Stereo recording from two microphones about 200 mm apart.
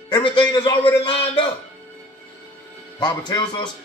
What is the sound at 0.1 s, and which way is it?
A man's voice, 20° left (ahead or behind).